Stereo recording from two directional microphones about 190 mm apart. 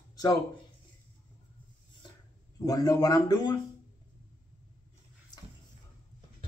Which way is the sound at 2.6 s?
20° left (ahead or behind).